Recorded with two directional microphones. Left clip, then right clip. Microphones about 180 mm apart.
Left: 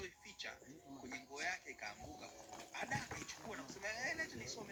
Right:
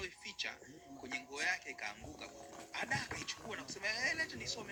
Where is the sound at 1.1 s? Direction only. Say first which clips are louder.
Right 6 dB; 25° right (ahead or behind).